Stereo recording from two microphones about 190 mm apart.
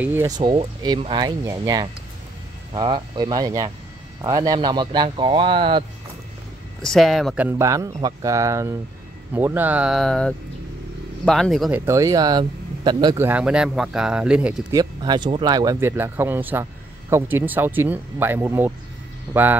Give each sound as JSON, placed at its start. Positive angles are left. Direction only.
{"t": 0.0, "sound": "speech", "side_deg": -10}
{"t": 0.4, "sound": "speech", "side_deg": -25}
{"t": 6.8, "sound": "speech", "side_deg": 0}
{"t": 7.4, "sound": "speech", "side_deg": -15}
{"t": 11.8, "sound": "speech", "side_deg": -15}
{"t": 13.2, "sound": "speech", "side_deg": -5}
{"t": 14.7, "sound": "speech", "side_deg": -20}